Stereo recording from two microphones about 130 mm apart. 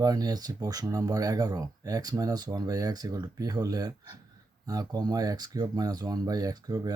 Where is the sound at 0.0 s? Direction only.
30° right (ahead or behind).